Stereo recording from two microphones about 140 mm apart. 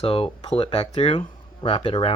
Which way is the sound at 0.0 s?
40° left (ahead or behind).